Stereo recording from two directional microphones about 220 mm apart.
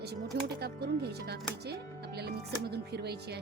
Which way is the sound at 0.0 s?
45° right (ahead or behind).